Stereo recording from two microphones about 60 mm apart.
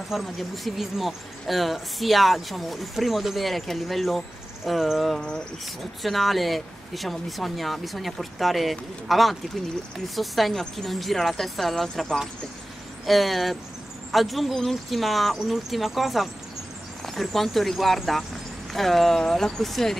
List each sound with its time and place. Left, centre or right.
0.1 s speech: centre